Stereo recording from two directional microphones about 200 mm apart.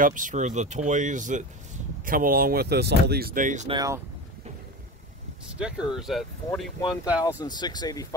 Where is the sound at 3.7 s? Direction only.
15° right (ahead or behind).